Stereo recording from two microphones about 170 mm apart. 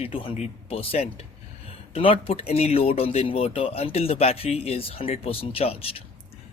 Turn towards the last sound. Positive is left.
turn(degrees=35)  # may be behind; listen again after turning